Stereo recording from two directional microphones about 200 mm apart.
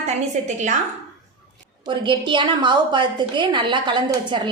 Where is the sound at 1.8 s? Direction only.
25° right (ahead or behind).